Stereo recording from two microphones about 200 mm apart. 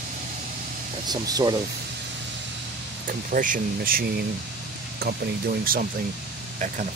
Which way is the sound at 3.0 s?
45° right (ahead or behind).